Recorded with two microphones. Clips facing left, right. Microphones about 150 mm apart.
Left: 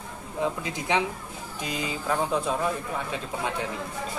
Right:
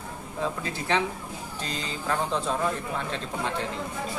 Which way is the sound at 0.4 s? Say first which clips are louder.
Left 2 dB; 15° left (ahead or behind).